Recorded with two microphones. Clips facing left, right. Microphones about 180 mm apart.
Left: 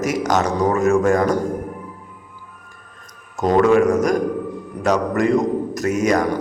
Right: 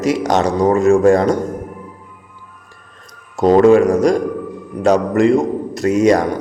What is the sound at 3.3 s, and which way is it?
A man's voice, 30° right (ahead or behind).